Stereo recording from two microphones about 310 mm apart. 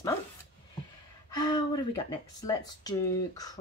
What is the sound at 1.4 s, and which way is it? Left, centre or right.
Speech, centre.